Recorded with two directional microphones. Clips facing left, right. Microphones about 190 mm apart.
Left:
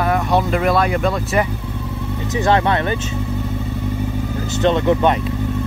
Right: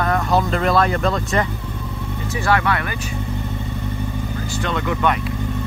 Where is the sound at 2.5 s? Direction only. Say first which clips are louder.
Left 3 dB; 25° left (ahead or behind).